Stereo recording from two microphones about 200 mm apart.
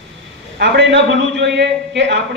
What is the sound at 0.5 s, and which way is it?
Speech, 60° right (ahead or behind).